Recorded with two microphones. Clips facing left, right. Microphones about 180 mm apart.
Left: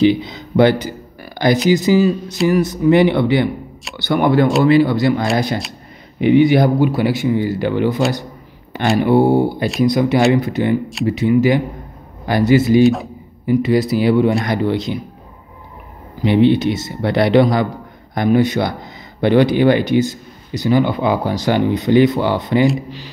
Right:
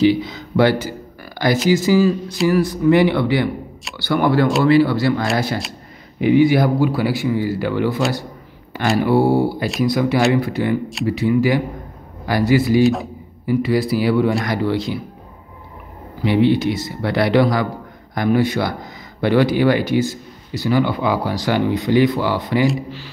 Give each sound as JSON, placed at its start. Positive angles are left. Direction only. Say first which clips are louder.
{"t": 0.0, "sound": "a sound", "louder": "left 1 dB", "side_deg": 20}
{"t": 1.7, "sound": "speech", "louder": "even", "side_deg": 20}
{"t": 12.8, "sound": "speech", "louder": "left 3 dB", "side_deg": 0}
{"t": 13.5, "sound": "speech", "louder": "left 3 dB", "side_deg": 20}
{"t": 16.2, "sound": "speech", "louder": "left 3 dB", "side_deg": 25}